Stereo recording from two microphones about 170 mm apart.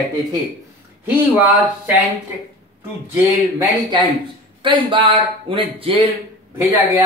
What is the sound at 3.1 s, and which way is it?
Speech, 10° right (ahead or behind).